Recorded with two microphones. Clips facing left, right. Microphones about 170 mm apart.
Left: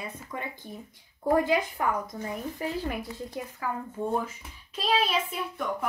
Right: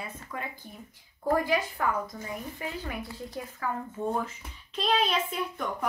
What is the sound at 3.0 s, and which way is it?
Speech, 15° left (ahead or behind).